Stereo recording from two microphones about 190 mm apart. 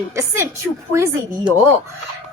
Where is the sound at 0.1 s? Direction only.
15° right (ahead or behind).